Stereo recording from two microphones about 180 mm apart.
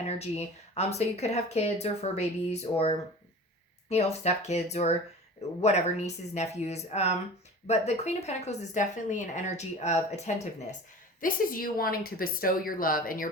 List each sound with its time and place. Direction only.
0.0 s a woman's voice: 35° left (ahead or behind)
11.2 s speech: 50° left (ahead or behind)